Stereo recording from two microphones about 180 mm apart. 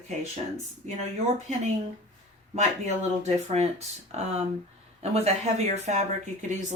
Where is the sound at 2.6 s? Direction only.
40° right (ahead or behind).